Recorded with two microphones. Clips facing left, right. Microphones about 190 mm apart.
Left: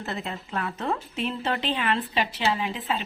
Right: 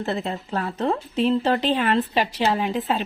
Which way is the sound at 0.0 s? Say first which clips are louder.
Right 7 dB; 35° right (ahead or behind).